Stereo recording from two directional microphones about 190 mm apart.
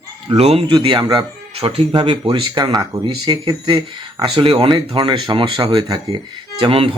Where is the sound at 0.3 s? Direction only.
35° right (ahead or behind).